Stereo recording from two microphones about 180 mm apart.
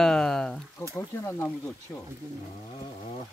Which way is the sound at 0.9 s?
15° left (ahead or behind).